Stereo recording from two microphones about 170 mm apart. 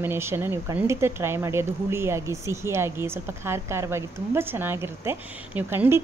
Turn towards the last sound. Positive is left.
turn(degrees=-15)  # may be behind; listen again after turning